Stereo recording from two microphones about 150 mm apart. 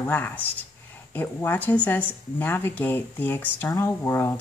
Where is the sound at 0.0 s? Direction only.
10° left (ahead or behind).